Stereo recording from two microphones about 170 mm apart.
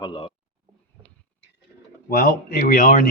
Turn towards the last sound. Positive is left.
turn(degrees=55)  # may be behind; listen again after turning